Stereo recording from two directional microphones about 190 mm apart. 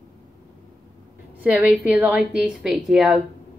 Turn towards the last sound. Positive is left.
turn(degrees=-5)  # may be behind; listen again after turning